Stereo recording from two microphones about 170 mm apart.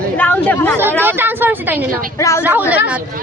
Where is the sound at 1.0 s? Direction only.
10° right (ahead or behind).